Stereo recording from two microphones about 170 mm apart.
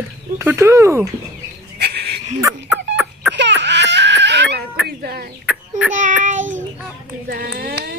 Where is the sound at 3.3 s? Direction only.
90° right.